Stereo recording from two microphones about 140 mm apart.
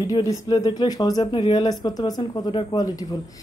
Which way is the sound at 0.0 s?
25° left (ahead or behind).